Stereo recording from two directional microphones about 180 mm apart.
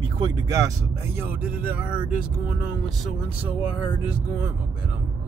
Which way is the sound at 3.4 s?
5° right (ahead or behind).